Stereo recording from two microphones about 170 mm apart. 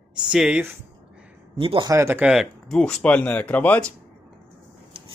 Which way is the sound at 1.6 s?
25° right (ahead or behind).